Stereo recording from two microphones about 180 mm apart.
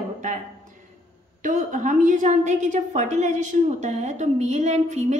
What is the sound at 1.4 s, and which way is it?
A woman's voice, 45° right (ahead or behind).